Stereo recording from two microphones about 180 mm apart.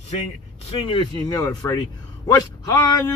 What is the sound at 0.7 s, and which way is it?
A man's voice, 25° left (ahead or behind).